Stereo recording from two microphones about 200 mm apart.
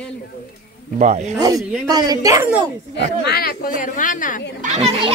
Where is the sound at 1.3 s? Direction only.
15° right (ahead or behind).